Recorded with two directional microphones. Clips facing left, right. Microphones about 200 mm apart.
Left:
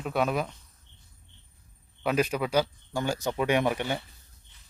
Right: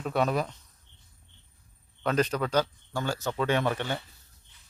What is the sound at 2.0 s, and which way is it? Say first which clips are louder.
Speech: even; 10° left (ahead or behind).